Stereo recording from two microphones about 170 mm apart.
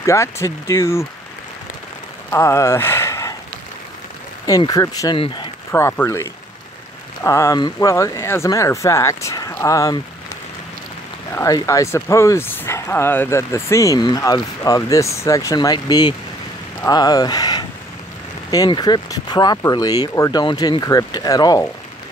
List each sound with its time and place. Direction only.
0.0 s speech: 15° left (ahead or behind)
2.3 s speech: 15° left (ahead or behind)
4.5 s speech: 20° left (ahead or behind)
7.2 s speech: 15° left (ahead or behind)
11.3 s speech: 20° left (ahead or behind)